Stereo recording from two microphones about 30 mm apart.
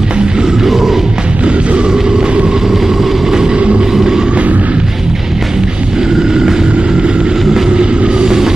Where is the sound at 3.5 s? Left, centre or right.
Right.